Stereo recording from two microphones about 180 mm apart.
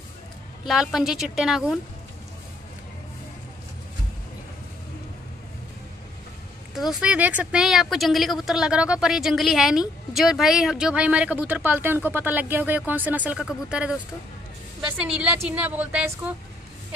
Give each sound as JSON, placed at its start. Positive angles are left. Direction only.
{"t": 0.7, "sound": "speech", "side_deg": 0}
{"t": 6.7, "sound": "speech", "side_deg": 0}
{"t": 15.1, "sound": "a woman's voice", "side_deg": -5}